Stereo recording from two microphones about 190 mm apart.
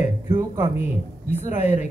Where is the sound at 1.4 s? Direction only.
40° left (ahead or behind).